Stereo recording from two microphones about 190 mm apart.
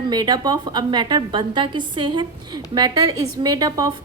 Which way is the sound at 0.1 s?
20° right (ahead or behind).